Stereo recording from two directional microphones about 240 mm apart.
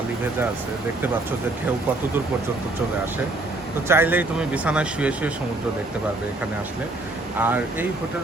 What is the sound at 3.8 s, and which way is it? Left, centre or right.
Speech, centre.